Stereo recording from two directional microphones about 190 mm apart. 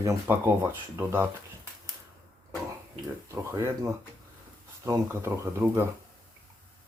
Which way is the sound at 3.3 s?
15° right (ahead or behind).